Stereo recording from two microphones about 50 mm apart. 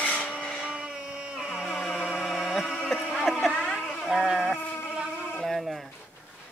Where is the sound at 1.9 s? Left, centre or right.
Centre.